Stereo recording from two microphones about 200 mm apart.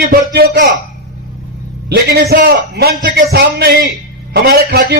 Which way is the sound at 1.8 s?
50° right (ahead or behind).